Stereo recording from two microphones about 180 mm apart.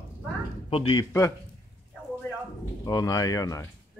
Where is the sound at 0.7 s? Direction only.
30° left (ahead or behind).